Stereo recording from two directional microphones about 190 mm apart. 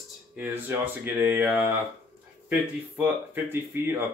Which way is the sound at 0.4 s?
10° right (ahead or behind).